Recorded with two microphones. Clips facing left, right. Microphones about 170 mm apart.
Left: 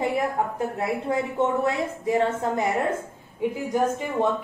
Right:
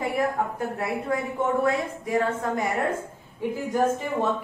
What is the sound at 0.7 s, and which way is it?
A woman's voice, 25° left (ahead or behind).